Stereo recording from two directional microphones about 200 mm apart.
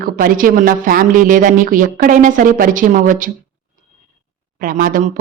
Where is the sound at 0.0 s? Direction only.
45° right (ahead or behind).